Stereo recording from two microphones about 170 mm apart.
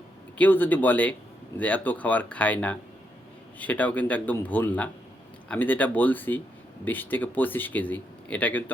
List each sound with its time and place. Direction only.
0.3 s speech: 10° left (ahead or behind)